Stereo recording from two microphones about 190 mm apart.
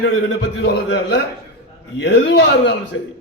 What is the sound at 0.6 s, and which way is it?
A man's voice, 60° left (ahead or behind).